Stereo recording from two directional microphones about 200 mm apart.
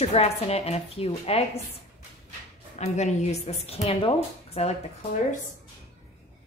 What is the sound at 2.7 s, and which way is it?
A woman's voice, 35° left (ahead or behind).